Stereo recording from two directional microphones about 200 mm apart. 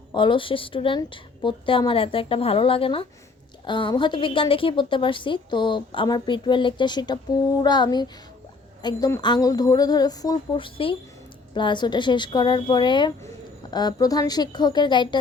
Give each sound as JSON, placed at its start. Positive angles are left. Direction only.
{"t": 0.1, "sound": "a woman's voice", "side_deg": 25}